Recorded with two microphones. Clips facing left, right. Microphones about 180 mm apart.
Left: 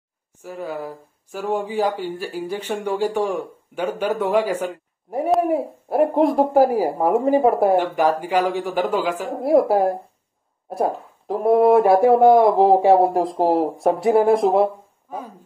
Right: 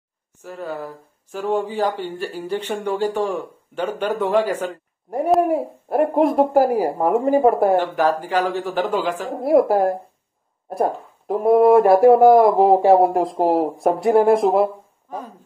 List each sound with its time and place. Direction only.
0.4 s speech: 10° left (ahead or behind)